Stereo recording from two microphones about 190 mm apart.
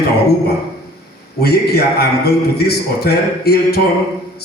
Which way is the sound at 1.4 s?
55° left (ahead or behind).